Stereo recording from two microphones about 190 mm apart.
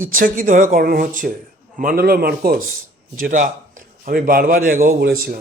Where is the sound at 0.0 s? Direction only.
45° right (ahead or behind).